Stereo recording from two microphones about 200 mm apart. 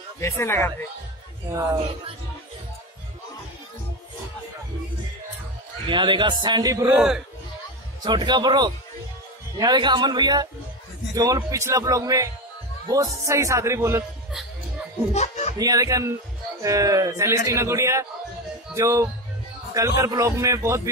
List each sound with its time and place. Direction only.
0.2 s speech: 15° left (ahead or behind)
1.5 s speech: 20° right (ahead or behind)
5.9 s speech: 25° right (ahead or behind)
6.9 s a man's voice: 5° right (ahead or behind)
8.0 s speech: 20° right (ahead or behind)
15.1 s speech: 35° left (ahead or behind)
15.5 s speech: 20° right (ahead or behind)